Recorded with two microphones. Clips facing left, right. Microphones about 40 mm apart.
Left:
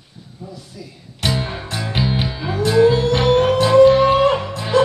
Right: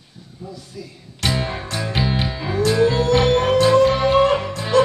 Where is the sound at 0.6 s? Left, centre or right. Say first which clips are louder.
Right 1 dB; centre.